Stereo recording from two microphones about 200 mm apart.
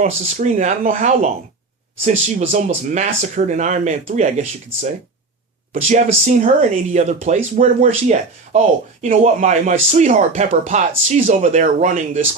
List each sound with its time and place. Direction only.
0.3 s speech: 40° right (ahead or behind)